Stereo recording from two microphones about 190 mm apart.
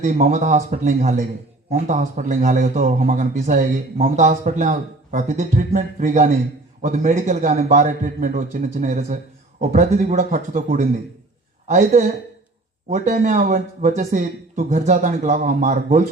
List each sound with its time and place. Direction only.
0.0 s speech: 45° right (ahead or behind)